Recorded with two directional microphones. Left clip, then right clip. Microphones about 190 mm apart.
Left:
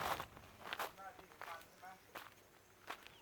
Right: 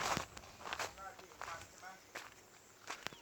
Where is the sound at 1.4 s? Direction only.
20° right (ahead or behind).